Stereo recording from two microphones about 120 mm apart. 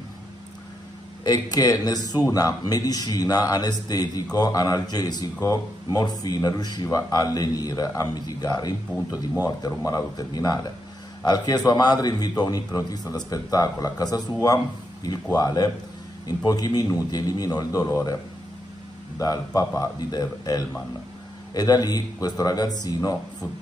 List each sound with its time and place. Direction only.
1.2 s speech: 35° left (ahead or behind)
15.3 s speech: 35° left (ahead or behind)
19.1 s speech: 30° left (ahead or behind)